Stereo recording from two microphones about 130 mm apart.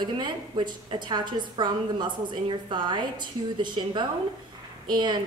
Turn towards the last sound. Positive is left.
turn(degrees=-35)  # may be behind; listen again after turning